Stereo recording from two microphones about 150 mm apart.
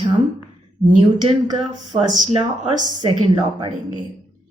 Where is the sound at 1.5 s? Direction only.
25° right (ahead or behind).